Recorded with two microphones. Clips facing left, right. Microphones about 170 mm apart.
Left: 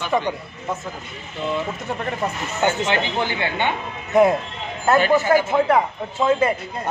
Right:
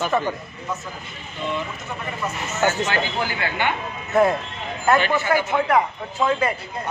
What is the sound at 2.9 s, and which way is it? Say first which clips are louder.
Speech: left 2 dB; 25° left (ahead or behind).